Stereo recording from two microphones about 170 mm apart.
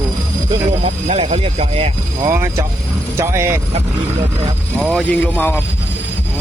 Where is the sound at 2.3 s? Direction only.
15° right (ahead or behind).